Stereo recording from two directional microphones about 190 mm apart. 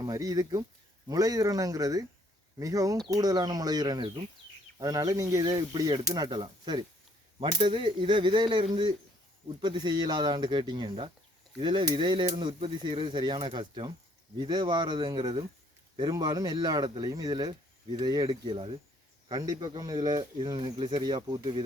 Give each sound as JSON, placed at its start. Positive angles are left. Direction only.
{"t": 0.0, "sound": "speech", "side_deg": -20}